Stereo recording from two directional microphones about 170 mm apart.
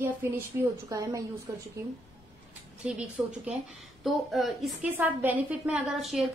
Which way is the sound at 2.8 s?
5° right (ahead or behind).